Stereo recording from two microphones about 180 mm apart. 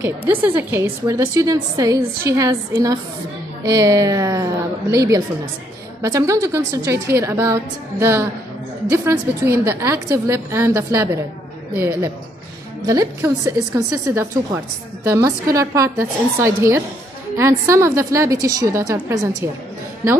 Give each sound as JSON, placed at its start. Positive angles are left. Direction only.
{"t": 0.0, "sound": "a woman's voice", "side_deg": -10}